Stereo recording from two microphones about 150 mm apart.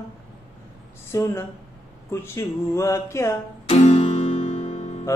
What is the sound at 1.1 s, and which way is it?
Music, 20° left (ahead or behind).